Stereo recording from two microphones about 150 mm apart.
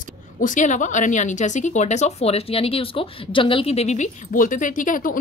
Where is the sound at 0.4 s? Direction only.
60° left (ahead or behind).